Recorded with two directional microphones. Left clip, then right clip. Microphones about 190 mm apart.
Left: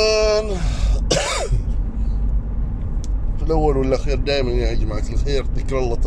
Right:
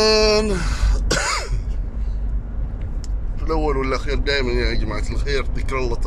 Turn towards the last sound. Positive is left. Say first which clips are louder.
# left 2 dB
turn(degrees=10)  # may be behind; listen again after turning